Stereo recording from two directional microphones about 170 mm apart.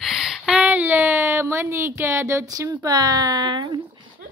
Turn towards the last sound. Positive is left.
turn(degrees=-25)  # may be behind; listen again after turning